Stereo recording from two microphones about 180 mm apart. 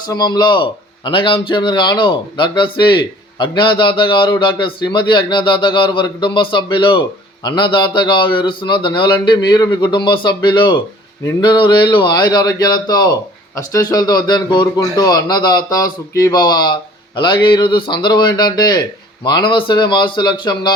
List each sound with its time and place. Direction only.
0.1 s a man's voice: 25° left (ahead or behind)